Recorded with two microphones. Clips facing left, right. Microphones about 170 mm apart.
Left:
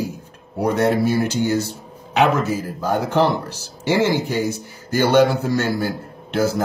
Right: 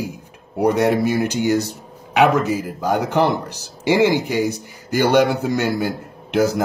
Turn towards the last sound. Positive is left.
turn(degrees=-15)  # may be behind; listen again after turning